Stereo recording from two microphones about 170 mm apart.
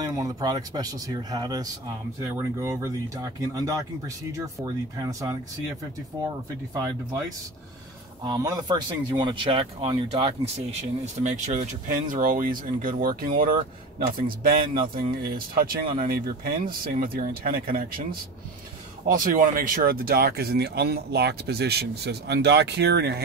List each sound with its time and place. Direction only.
0.0 s speech: 20° right (ahead or behind)
8.2 s speech: 20° right (ahead or behind); by 18.0 s 60° right (ahead or behind)
19.0 s speech: 50° right (ahead or behind); by 23.2 s 75° right (ahead or behind)